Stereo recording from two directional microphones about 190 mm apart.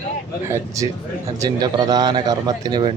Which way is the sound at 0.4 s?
15° right (ahead or behind).